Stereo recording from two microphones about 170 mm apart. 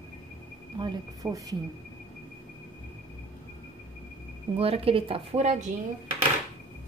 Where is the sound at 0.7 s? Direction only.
25° right (ahead or behind).